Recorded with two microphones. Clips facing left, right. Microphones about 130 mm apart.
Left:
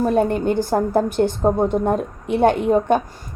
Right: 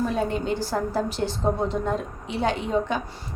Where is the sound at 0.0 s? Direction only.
55° left (ahead or behind).